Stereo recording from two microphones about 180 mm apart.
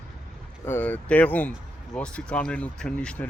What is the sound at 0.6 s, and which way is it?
Speech, 10° left (ahead or behind).